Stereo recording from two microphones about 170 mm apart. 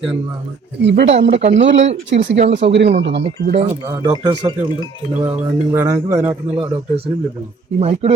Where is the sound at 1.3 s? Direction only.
40° right (ahead or behind).